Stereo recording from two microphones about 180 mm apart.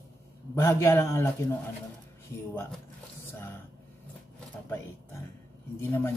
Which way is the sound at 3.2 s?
10° left (ahead or behind).